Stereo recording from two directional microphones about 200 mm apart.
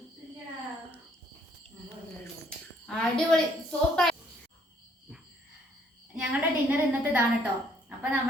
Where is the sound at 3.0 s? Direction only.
5° left (ahead or behind).